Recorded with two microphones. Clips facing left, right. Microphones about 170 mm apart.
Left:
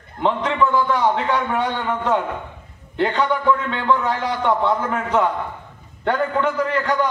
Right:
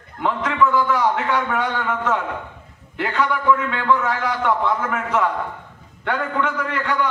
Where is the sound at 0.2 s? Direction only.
30° left (ahead or behind).